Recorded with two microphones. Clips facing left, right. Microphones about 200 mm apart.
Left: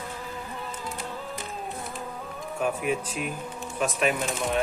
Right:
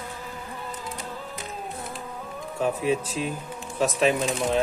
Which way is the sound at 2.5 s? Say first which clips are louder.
Right 3 dB; 30° right (ahead or behind).